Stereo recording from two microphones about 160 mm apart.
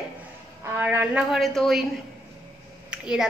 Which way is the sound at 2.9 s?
5° right (ahead or behind).